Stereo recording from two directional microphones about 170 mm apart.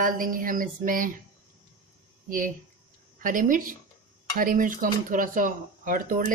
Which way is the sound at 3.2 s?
50° right (ahead or behind).